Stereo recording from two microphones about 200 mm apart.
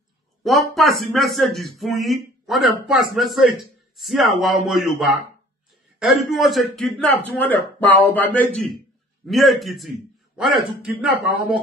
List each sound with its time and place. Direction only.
0.4 s speech: centre (ahead or behind)